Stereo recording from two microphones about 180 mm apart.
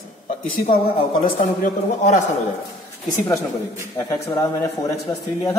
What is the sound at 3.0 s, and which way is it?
A woman's voice, 20° left (ahead or behind).